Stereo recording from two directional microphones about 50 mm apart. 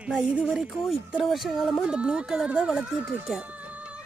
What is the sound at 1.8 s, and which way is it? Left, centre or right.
Speech, centre.